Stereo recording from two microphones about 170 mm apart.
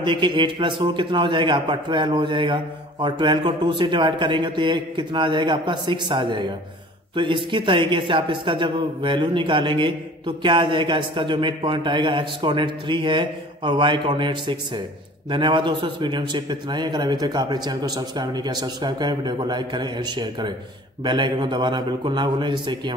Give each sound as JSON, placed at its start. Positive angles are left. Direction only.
{"t": 0.0, "sound": "a woman's voice", "side_deg": -30}